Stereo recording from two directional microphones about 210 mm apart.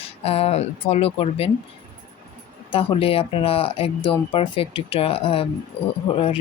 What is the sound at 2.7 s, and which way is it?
Speech, 25° left (ahead or behind).